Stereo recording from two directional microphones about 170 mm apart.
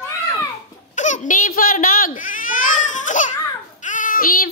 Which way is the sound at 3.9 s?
50° left (ahead or behind).